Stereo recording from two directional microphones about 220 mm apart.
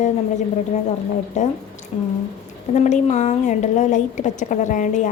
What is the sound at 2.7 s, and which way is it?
A woman's voice, 30° left (ahead or behind).